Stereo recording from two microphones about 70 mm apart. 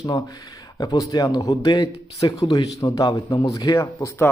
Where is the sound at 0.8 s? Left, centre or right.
Left.